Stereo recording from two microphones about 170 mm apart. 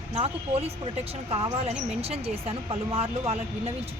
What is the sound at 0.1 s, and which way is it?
Speech, 40° right (ahead or behind).